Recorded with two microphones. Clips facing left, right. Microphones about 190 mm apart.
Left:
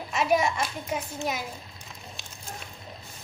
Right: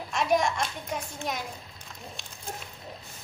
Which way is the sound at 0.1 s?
5° left (ahead or behind).